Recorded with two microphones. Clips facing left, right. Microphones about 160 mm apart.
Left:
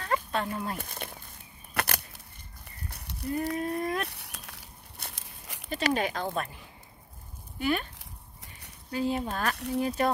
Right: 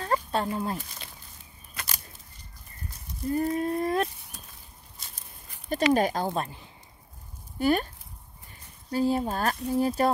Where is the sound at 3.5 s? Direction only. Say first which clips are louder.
Right 4 dB; 30° right (ahead or behind).